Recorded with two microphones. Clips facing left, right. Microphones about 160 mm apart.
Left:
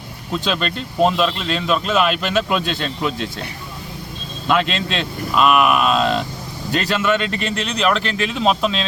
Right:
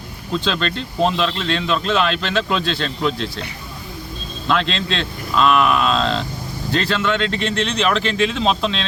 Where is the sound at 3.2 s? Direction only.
45° left (ahead or behind).